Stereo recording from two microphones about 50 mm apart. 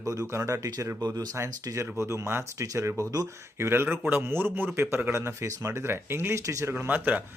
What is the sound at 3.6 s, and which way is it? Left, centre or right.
A man's voice, right.